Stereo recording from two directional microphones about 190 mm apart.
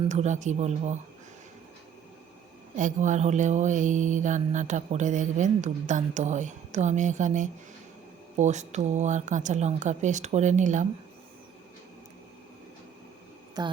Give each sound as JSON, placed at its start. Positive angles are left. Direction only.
{"t": 0.0, "sound": "mantra", "side_deg": -35}
{"t": 2.7, "sound": "mantra", "side_deg": -40}
{"t": 13.6, "sound": "a sound", "side_deg": -20}